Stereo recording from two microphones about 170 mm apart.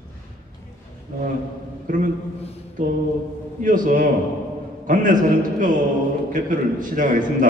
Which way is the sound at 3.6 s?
50° right (ahead or behind).